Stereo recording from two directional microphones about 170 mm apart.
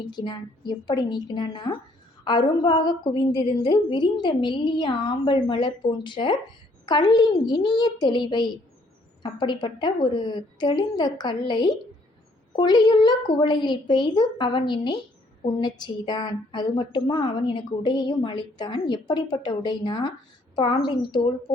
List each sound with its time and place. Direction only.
0.2 s a woman's voice: 25° left (ahead or behind)